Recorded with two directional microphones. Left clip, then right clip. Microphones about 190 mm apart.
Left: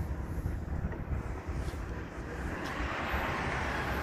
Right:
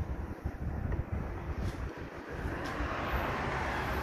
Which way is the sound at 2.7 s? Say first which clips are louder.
Left 1 dB; 40° right (ahead or behind).